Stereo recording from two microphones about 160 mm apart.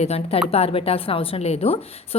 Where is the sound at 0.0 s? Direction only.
40° left (ahead or behind).